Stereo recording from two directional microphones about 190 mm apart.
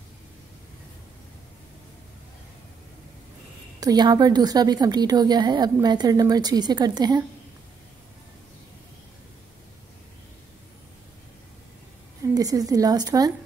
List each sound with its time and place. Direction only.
3.8 s a woman's voice: 20° right (ahead or behind)
12.4 s a woman's voice: 20° right (ahead or behind)